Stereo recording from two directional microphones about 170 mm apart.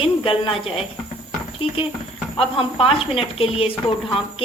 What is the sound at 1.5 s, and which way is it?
A woman's voice, 30° left (ahead or behind).